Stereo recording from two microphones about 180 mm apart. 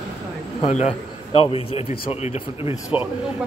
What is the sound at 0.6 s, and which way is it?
A man's voice, 35° left (ahead or behind).